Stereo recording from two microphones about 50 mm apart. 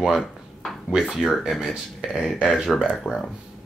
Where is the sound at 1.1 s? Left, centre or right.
Centre.